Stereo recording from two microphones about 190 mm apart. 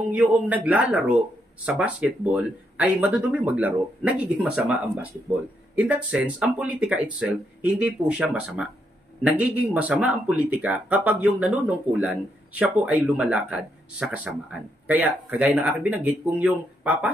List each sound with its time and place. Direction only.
0.1 s speech: 10° right (ahead or behind)